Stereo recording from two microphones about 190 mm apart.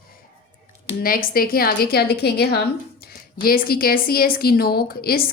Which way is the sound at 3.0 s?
55° left (ahead or behind).